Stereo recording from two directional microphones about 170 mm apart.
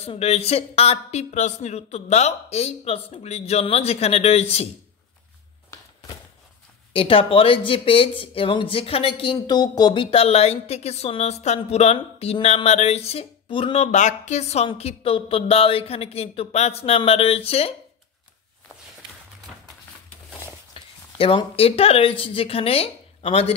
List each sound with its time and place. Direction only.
0.0 s speech: 35° left (ahead or behind)
6.9 s speech: 30° left (ahead or behind)
13.9 s speech: 45° left (ahead or behind)
20.7 s speech: 30° left (ahead or behind)